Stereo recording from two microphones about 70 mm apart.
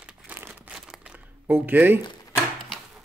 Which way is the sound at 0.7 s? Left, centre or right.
Centre.